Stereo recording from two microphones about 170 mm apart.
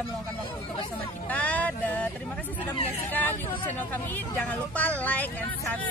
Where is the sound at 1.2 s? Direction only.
10° left (ahead or behind).